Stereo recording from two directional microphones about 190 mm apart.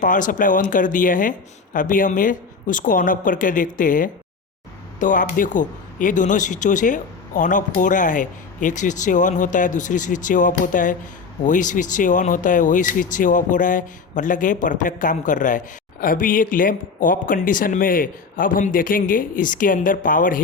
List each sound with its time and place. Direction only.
0.0 s speech: 45° left (ahead or behind)